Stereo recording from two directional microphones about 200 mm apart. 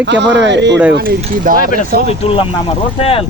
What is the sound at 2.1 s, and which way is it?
Speech, 25° left (ahead or behind).